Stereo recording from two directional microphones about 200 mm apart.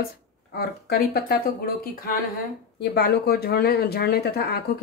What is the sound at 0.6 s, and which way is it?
Speech, 50° left (ahead or behind).